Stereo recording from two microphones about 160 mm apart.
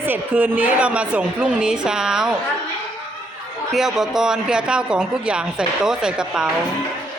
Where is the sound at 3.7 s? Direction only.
5° right (ahead or behind).